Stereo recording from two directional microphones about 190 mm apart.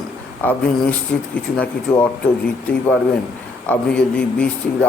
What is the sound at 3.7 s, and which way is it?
A man's voice, 5° left (ahead or behind).